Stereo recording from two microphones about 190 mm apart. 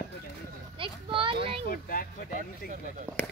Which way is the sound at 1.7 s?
45° left (ahead or behind).